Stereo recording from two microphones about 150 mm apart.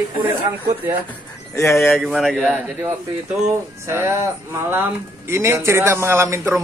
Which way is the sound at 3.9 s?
20° right (ahead or behind).